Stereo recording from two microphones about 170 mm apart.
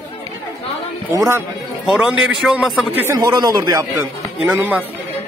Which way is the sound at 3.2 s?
25° right (ahead or behind).